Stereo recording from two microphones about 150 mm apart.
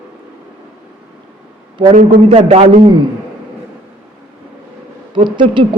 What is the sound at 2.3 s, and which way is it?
Speech, 45° right (ahead or behind).